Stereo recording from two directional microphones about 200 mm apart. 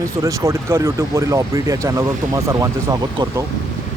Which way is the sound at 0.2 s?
15° right (ahead or behind).